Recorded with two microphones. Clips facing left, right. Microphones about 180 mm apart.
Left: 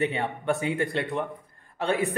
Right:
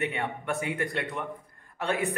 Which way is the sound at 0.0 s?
30° left (ahead or behind).